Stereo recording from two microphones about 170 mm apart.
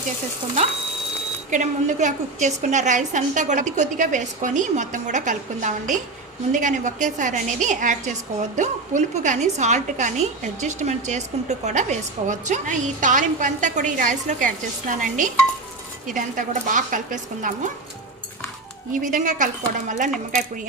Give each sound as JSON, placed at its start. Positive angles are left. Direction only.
{"t": 1.5, "sound": "a woman's voice", "side_deg": -45}
{"t": 18.9, "sound": "a woman's voice", "side_deg": -50}